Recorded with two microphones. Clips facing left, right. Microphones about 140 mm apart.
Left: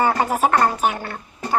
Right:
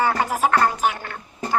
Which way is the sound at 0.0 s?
15° left (ahead or behind).